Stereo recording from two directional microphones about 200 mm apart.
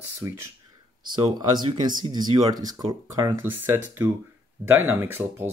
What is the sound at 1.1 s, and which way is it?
Speech, 25° right (ahead or behind).